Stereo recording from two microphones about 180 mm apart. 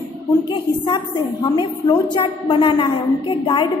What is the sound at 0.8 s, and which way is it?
A woman's voice, 25° left (ahead or behind).